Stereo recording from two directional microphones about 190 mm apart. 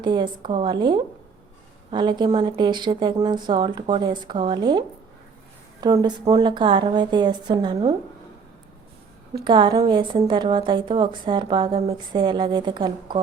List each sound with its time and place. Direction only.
0.0 s a woman's voice: 25° right (ahead or behind)
9.3 s a woman's voice: 25° right (ahead or behind)